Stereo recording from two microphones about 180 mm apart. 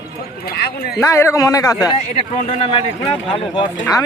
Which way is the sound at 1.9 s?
35° left (ahead or behind).